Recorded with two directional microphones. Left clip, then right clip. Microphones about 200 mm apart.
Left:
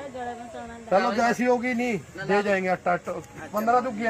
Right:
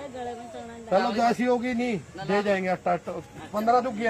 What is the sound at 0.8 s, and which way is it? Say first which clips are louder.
Speech: left 1 dB; centre (ahead or behind).